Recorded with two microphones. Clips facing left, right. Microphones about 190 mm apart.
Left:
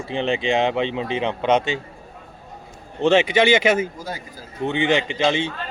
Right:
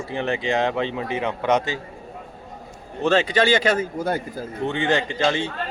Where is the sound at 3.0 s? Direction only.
25° left (ahead or behind).